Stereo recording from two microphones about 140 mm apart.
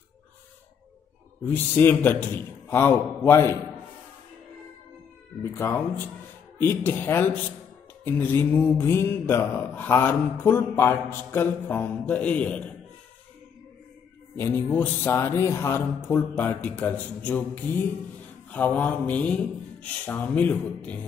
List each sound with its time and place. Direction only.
1.4 s mantra: 15° left (ahead or behind)
5.4 s mantra: 15° left (ahead or behind)
14.3 s mantra: 15° left (ahead or behind)
18.5 s mantra: 10° left (ahead or behind)